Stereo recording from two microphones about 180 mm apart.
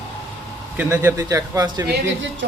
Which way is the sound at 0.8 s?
10° right (ahead or behind).